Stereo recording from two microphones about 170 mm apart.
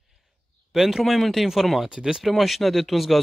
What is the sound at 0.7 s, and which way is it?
Speech, centre (ahead or behind).